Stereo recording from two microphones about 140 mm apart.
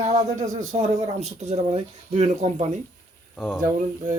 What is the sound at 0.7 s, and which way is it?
Speech, 50° right (ahead or behind).